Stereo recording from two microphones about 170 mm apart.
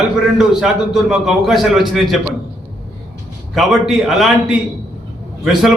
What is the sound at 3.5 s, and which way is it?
A man's voice, centre (ahead or behind).